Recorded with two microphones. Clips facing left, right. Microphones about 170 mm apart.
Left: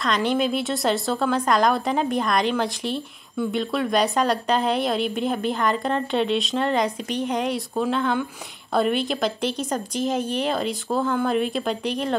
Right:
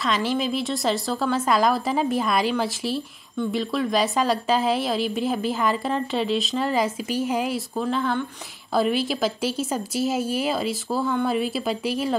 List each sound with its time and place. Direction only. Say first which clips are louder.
0.0 s a woman's voice: left 2 dB; centre (ahead or behind)